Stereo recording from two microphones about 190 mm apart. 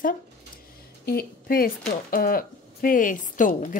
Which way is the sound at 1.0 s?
55° left (ahead or behind).